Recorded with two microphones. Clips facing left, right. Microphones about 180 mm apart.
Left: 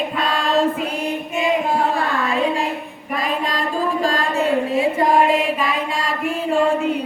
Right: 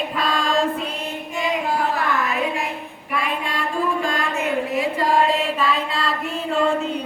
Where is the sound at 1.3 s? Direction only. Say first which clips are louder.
Left 3 dB; 25° left (ahead or behind).